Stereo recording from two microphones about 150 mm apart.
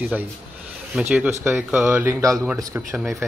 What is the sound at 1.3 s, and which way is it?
Speech, 15° right (ahead or behind).